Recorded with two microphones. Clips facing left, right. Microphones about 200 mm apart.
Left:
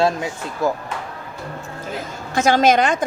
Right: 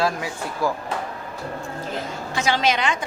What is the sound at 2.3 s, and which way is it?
Speech, 45° left (ahead or behind).